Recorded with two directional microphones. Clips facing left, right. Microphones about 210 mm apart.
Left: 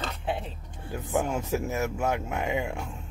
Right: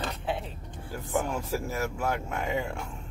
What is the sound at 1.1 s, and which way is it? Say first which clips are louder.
Speech: left 2 dB; 20° left (ahead or behind).